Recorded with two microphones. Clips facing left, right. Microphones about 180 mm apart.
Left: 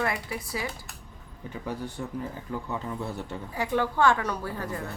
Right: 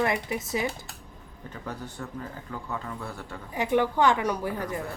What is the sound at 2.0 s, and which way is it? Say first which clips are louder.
A man's voice: left 3 dB; 15° left (ahead or behind).